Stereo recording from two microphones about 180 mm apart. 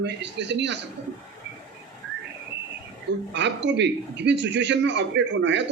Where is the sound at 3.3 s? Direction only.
75° right (ahead or behind).